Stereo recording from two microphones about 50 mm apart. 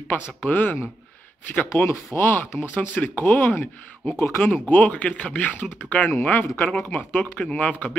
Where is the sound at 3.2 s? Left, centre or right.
Left.